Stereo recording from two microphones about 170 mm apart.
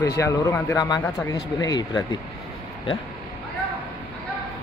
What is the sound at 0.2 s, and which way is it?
A man's voice, 20° left (ahead or behind).